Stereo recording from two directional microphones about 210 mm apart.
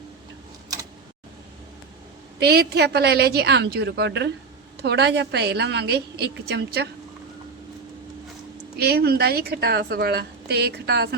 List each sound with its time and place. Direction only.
2.4 s a woman's voice: 50° right (ahead or behind)
8.8 s a woman's voice: 50° right (ahead or behind)